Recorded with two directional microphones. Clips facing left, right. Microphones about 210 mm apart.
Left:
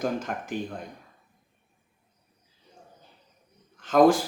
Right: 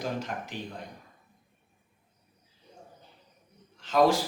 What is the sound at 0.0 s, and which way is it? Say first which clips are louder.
Speech: left 4 dB; 50° left (ahead or behind).